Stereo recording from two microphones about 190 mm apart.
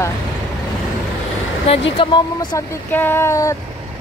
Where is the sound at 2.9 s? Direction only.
10° left (ahead or behind).